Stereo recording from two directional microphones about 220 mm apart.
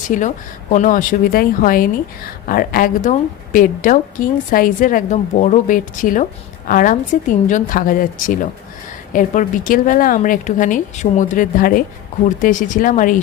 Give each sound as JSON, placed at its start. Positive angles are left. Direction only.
{"t": 0.1, "sound": "a woman's voice", "side_deg": 35}